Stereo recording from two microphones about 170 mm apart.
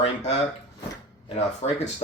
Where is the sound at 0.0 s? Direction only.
40° left (ahead or behind).